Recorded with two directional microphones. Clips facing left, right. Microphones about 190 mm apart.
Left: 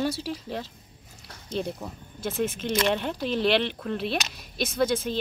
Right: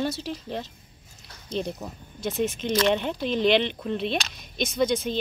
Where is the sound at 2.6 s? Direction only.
Centre (ahead or behind).